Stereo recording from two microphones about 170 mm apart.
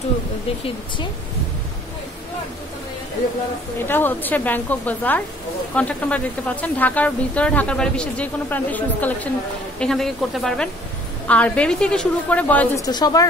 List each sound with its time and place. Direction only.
3.8 s a woman's voice: 10° left (ahead or behind)
12.8 s a woman's voice: 20° left (ahead or behind)